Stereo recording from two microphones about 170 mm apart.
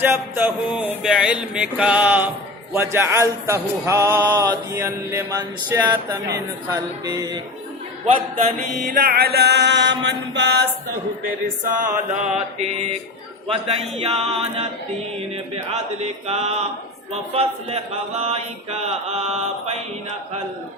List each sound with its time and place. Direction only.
0.0 s music: 10° right (ahead or behind)
6.3 s a man's voice: 20° right (ahead or behind)
8.9 s chant: 55° right (ahead or behind); by 10.7 s 85° right
11.6 s chant: 50° right (ahead or behind)
12.5 s mantra: 40° right (ahead or behind)